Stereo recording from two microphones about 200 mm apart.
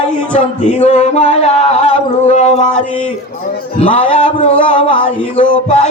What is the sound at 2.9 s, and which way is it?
Music, 5° left (ahead or behind).